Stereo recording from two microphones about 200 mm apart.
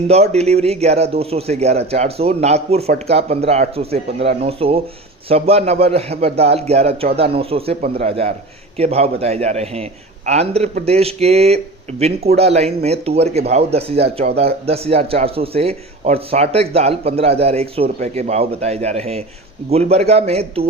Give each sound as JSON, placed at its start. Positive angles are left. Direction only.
{"t": 0.1, "sound": "a man's voice", "side_deg": -30}